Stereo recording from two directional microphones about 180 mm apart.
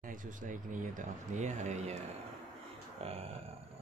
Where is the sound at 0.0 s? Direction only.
45° right (ahead or behind).